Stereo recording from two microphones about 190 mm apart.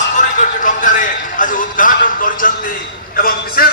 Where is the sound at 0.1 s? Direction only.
40° left (ahead or behind).